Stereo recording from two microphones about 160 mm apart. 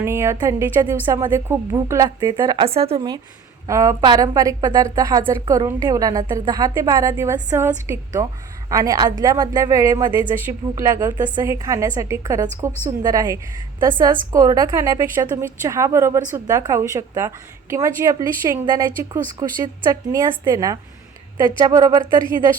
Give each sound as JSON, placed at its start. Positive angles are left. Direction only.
{"t": 0.0, "sound": "a woman's voice", "side_deg": -15}
{"t": 1.3, "sound": "a woman's voice", "side_deg": -15}
{"t": 3.7, "sound": "a woman's voice", "side_deg": -20}